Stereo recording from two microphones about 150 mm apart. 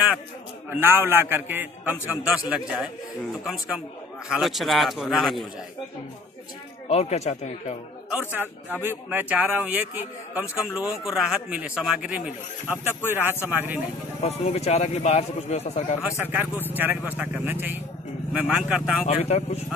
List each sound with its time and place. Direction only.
0.7 s a man's voice: 15° right (ahead or behind)
4.3 s a man's voice: centre (ahead or behind)
6.9 s speech: 45° left (ahead or behind)
8.1 s a man's voice: 10° right (ahead or behind)
14.2 s speech: 45° left (ahead or behind)
16.2 s a man's voice: 10° right (ahead or behind)
19.0 s speech: 45° left (ahead or behind)